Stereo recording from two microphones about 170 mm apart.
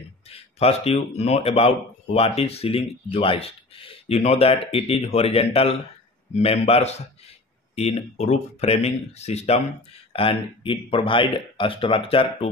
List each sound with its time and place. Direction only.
0.3 s speech: 35° left (ahead or behind)